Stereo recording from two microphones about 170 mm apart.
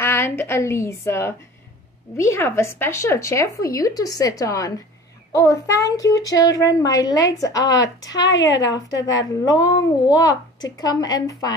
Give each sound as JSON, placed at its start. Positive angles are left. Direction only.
{"t": 0.0, "sound": "a woman's voice", "side_deg": 15}